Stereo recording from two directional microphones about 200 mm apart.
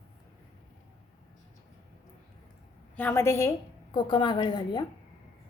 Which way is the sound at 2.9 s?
10° left (ahead or behind).